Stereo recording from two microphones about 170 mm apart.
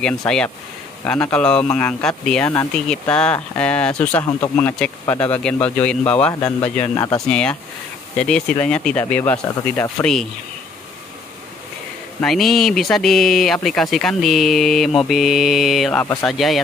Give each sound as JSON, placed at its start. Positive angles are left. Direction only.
{"t": 0.2, "sound": "speech", "side_deg": 5}
{"t": 7.2, "sound": "speech", "side_deg": 5}
{"t": 12.2, "sound": "speech", "side_deg": 0}